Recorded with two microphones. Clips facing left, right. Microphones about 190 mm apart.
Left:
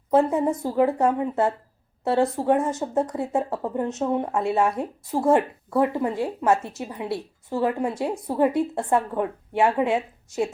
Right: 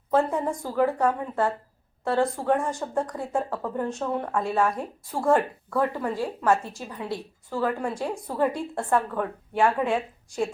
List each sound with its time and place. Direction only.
0.1 s speech: 20° left (ahead or behind)